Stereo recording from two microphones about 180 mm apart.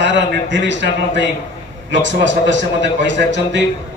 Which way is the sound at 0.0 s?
90° right.